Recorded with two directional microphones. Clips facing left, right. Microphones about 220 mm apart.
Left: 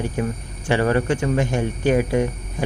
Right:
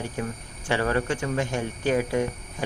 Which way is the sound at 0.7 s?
15° left (ahead or behind).